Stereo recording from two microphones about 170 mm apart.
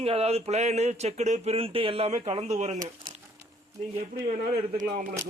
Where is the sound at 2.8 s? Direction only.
20° right (ahead or behind).